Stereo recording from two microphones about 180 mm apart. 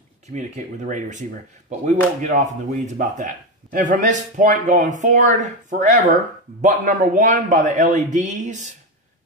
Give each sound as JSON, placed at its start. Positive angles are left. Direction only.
{"t": 0.3, "sound": "speech", "side_deg": -40}
{"t": 2.2, "sound": "speech", "side_deg": -45}